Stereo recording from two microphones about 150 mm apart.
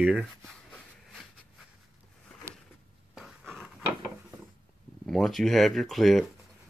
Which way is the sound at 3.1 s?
5° right (ahead or behind).